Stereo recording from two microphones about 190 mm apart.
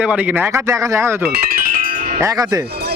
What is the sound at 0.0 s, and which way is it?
Speech, 10° right (ahead or behind).